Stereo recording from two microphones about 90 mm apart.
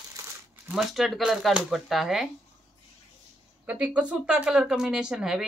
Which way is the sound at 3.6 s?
15° right (ahead or behind).